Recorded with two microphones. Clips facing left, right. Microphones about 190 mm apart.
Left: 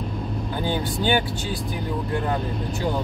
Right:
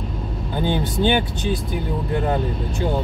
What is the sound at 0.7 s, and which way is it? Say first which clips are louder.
Speech: right 4 dB; 20° right (ahead or behind).